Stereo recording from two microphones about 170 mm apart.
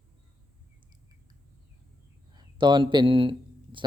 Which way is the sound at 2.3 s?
25° right (ahead or behind).